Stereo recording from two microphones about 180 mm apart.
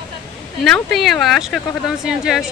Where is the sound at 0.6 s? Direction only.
Centre (ahead or behind).